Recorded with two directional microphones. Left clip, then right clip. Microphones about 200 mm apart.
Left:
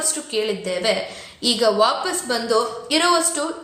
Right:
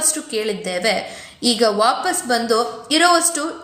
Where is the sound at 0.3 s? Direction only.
15° right (ahead or behind).